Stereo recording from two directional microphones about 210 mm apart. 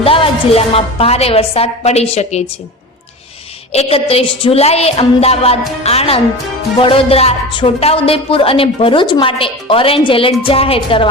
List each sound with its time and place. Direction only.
0.0 s a woman's voice: 25° left (ahead or behind)
3.7 s a woman's voice: 30° left (ahead or behind)